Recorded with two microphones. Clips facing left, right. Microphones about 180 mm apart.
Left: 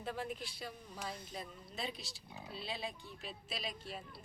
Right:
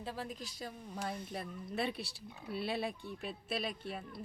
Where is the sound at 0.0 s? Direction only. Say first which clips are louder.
Left 1 dB; 35° right (ahead or behind).